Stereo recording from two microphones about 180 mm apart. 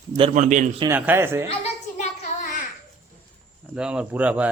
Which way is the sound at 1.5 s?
40° left (ahead or behind).